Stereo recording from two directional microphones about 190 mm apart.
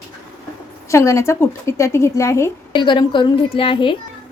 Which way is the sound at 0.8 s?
15° left (ahead or behind).